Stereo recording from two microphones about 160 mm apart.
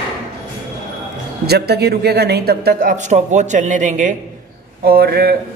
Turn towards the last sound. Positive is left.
turn(degrees=-75)  # may be behind; listen again after turning